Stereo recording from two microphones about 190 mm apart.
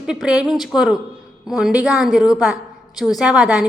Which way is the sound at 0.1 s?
5° right (ahead or behind).